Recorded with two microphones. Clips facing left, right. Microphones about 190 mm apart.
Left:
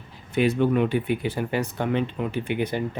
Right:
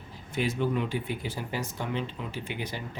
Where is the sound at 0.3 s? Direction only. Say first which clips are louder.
Left 8 dB; 60° left (ahead or behind).